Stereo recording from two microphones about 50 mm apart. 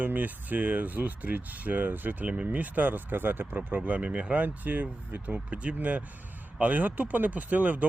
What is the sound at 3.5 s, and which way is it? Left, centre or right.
Speech, right.